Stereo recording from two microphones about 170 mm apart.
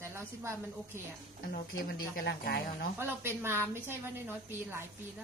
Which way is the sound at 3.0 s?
15° right (ahead or behind).